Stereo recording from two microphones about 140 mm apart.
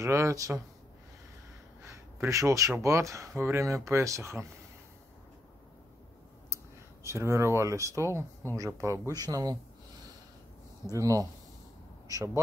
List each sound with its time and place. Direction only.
0.0 s speech: 20° right (ahead or behind)
1.8 s gasp: 20° right (ahead or behind)
2.8 s speech: 20° right (ahead or behind)
6.5 s speech: 20° right (ahead or behind)
10.9 s speech: 25° right (ahead or behind)